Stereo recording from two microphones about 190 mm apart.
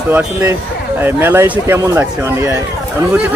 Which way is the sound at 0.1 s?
10° right (ahead or behind).